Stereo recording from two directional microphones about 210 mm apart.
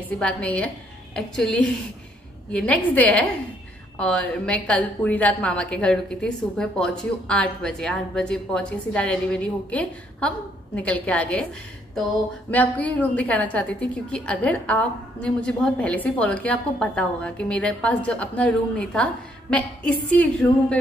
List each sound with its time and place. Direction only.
0.2 s a woman's voice: 5° left (ahead or behind)
12.4 s a woman's voice: 5° left (ahead or behind)